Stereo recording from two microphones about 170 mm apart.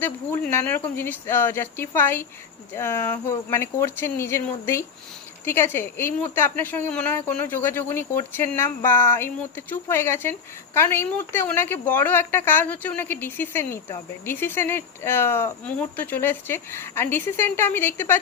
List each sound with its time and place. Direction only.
0.0 s a woman's voice: 10° left (ahead or behind)